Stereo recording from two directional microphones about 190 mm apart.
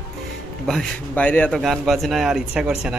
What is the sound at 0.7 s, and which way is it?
A man's voice, 5° left (ahead or behind).